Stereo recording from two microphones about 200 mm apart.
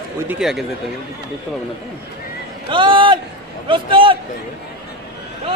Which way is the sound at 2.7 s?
25° right (ahead or behind).